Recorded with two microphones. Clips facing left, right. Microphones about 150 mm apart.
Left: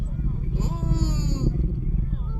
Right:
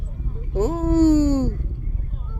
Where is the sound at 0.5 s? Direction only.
50° right (ahead or behind).